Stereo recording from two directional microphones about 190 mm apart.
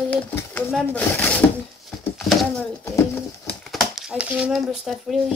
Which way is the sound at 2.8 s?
15° left (ahead or behind).